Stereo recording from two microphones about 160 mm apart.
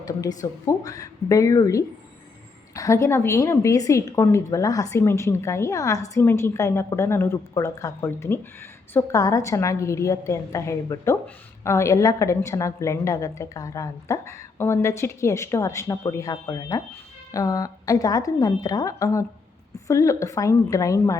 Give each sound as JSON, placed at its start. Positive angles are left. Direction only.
{"t": 0.0, "sound": "a woman's voice", "side_deg": 25}